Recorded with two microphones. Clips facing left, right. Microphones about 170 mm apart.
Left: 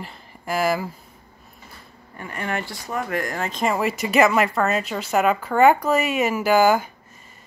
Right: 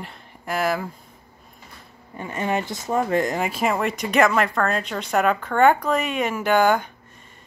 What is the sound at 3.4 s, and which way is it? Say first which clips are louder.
Speech: even; 5° right (ahead or behind).